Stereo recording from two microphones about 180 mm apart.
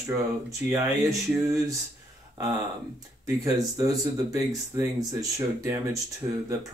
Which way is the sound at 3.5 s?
20° right (ahead or behind).